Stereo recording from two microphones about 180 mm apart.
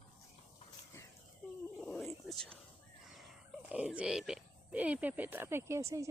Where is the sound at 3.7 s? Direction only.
5° right (ahead or behind).